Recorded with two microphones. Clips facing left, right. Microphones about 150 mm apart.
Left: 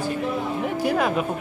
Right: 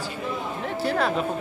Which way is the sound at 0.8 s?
10° left (ahead or behind).